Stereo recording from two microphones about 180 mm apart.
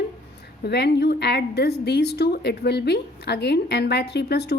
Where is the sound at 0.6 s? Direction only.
65° left (ahead or behind).